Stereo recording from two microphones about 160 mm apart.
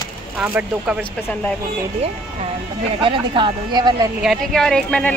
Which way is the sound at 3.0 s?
35° right (ahead or behind).